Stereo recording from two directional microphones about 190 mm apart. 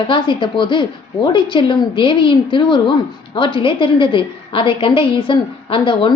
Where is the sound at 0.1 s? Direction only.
25° left (ahead or behind).